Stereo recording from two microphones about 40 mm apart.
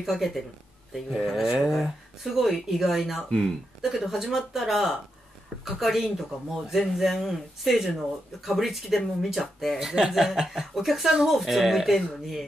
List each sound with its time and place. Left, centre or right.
0.0 s speech: centre
3.3 s speech: centre
3.8 s speech: centre
10.7 s speech: centre